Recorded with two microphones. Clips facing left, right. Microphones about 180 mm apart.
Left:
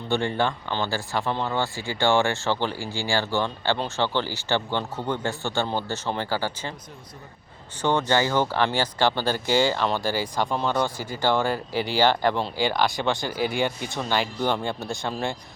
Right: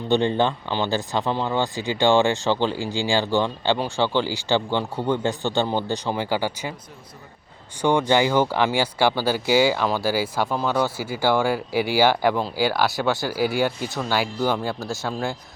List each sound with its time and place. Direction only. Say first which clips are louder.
0.1 s speech: right 4 dB; 20° right (ahead or behind)
7.8 s speech: right 3 dB; 10° right (ahead or behind)